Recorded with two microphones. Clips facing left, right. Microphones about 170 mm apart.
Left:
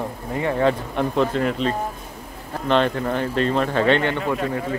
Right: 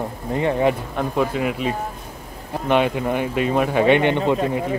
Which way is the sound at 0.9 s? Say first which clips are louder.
Left 1 dB; 5° right (ahead or behind).